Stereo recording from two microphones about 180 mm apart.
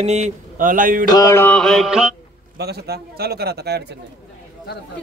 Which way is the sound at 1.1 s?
20° left (ahead or behind).